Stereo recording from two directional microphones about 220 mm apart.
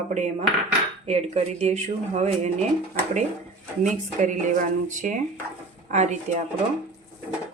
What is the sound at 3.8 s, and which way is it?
Speech, 35° right (ahead or behind).